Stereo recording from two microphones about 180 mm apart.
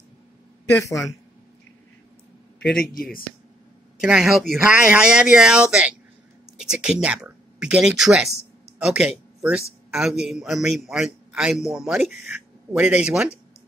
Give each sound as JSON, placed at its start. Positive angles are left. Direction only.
{"t": 2.9, "sound": "speech", "side_deg": 55}
{"t": 4.0, "sound": "a man's voice", "side_deg": -5}